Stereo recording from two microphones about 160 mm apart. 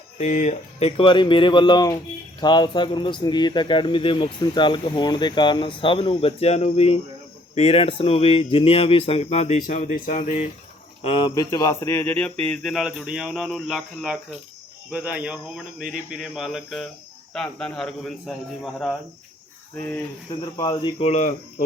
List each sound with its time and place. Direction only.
0.2 s speech: 45° left (ahead or behind)
11.0 s speech: 30° left (ahead or behind); by 18.9 s centre (ahead or behind)
20.4 s speech: 30° left (ahead or behind)
21.1 s speech: 50° left (ahead or behind)